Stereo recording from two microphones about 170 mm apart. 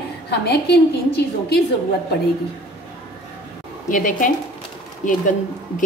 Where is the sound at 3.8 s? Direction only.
50° left (ahead or behind).